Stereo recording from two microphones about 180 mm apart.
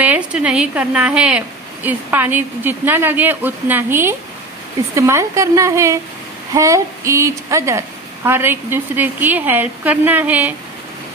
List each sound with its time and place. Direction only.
0.0 s a woman's voice: 5° right (ahead or behind)